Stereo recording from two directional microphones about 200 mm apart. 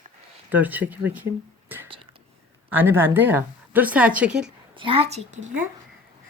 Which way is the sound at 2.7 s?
10° right (ahead or behind).